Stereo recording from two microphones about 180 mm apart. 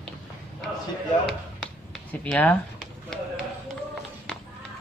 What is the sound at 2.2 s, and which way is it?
Speech, 10° left (ahead or behind).